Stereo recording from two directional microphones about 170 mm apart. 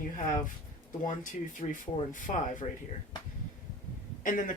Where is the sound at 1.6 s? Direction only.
50° left (ahead or behind).